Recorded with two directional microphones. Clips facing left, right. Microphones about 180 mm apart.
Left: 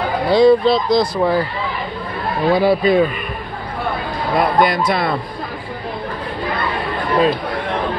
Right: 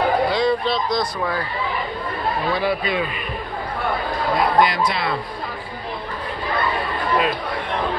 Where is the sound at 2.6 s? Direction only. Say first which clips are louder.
Left 8 dB; 35° left (ahead or behind).